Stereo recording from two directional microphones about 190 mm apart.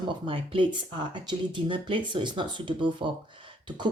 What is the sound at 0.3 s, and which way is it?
Speech, 25° right (ahead or behind).